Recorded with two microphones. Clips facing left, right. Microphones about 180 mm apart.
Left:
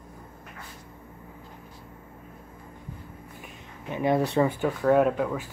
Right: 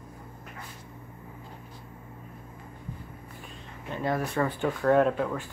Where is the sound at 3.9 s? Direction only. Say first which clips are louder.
Left 5 dB; 15° left (ahead or behind).